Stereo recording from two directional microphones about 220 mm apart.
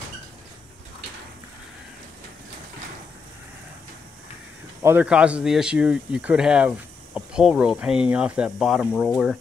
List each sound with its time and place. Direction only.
4.8 s speech: 5° right (ahead or behind)